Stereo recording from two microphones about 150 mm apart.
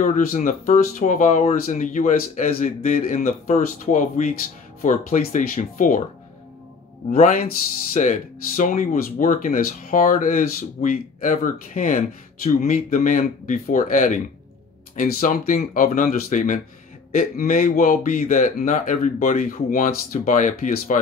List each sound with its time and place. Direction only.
0.0 s speech: 60° left (ahead or behind)
7.1 s speech: 65° left (ahead or behind)
7.9 s speech: 55° left (ahead or behind)